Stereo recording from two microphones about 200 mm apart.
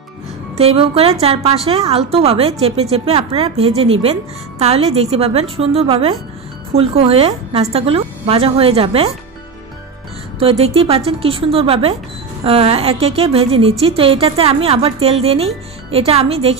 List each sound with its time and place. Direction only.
0.6 s a woman's voice: 30° right (ahead or behind)
10.4 s a woman's voice: 30° right (ahead or behind)